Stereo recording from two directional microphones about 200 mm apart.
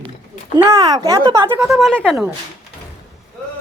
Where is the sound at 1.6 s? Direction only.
Centre (ahead or behind).